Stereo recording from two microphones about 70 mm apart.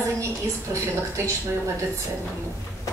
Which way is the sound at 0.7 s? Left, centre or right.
Right.